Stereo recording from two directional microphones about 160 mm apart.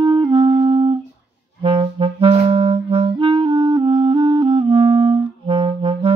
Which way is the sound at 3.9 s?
40° right (ahead or behind).